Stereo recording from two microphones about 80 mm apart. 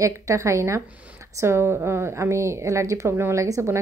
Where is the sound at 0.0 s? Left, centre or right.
Right.